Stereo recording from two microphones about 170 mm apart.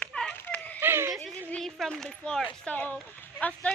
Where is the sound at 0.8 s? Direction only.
15° right (ahead or behind).